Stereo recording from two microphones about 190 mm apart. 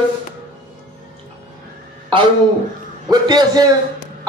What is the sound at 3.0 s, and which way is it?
Speech, 20° right (ahead or behind).